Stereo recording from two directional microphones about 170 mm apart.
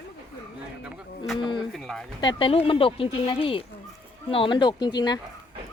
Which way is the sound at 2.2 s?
30° left (ahead or behind).